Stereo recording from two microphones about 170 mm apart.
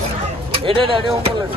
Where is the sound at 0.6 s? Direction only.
30° right (ahead or behind).